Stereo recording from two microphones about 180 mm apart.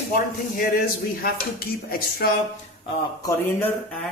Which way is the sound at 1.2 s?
55° left (ahead or behind).